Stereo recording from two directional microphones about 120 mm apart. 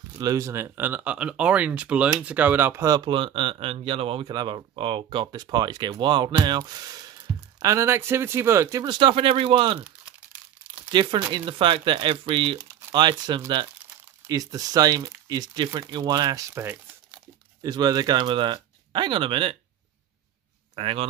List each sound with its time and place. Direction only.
0.2 s speech: 30° right (ahead or behind)
3.1 s speech: 45° right (ahead or behind)
10.9 s speech: 40° right (ahead or behind)
14.2 s speech: 30° right (ahead or behind)
17.6 s speech: 35° right (ahead or behind)
20.7 s speech: 50° right (ahead or behind)